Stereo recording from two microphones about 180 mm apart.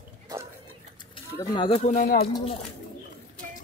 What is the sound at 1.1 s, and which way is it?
Speech, 25° left (ahead or behind).